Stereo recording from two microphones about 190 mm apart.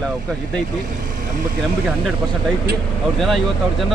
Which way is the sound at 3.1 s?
Centre (ahead or behind).